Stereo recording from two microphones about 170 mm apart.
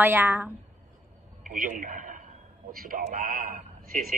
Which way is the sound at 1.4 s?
50° right (ahead or behind).